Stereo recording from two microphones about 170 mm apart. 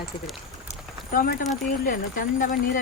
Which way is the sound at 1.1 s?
55° left (ahead or behind).